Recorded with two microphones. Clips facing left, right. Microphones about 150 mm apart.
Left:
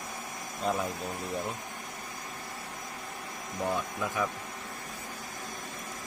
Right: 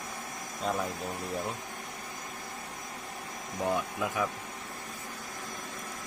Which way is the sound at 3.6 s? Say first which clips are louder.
Right 1 dB; 15° right (ahead or behind).